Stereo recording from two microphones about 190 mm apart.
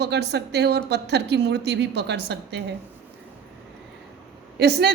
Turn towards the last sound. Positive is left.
turn(degrees=-60)  # may be behind; listen again after turning